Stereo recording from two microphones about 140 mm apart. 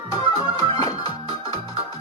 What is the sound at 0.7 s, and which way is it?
Music, 40° right (ahead or behind).